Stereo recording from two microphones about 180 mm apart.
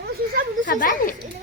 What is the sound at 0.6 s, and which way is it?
Speech, 50° left (ahead or behind).